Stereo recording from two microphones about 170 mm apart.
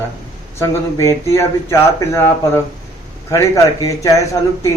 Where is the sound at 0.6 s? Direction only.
15° left (ahead or behind).